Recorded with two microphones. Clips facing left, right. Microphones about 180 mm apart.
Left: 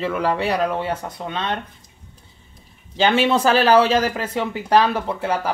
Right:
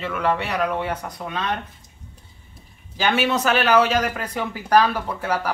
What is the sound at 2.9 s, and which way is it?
Speech, 30° left (ahead or behind).